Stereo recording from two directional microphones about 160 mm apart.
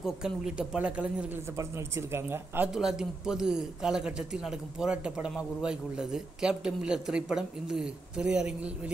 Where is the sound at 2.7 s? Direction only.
Centre (ahead or behind).